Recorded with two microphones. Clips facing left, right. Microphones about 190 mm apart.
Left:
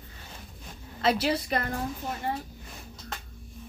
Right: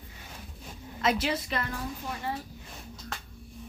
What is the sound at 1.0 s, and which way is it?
Speech, 35° left (ahead or behind).